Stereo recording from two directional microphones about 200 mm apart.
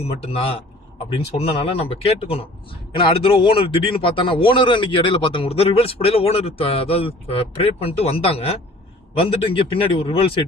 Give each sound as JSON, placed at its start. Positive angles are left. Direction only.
{"t": 0.0, "sound": "a man's voice", "side_deg": 30}